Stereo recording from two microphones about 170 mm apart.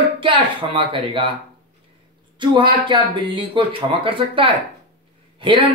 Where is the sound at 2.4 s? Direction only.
30° right (ahead or behind).